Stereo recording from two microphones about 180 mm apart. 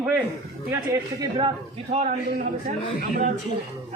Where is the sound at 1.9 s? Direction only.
40° right (ahead or behind).